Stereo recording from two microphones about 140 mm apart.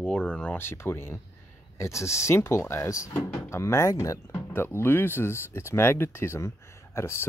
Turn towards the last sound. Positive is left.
turn(degrees=20)  # may be behind; listen again after turning